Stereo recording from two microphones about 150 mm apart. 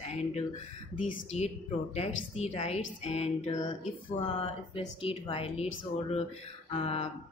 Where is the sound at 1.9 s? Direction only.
45° left (ahead or behind).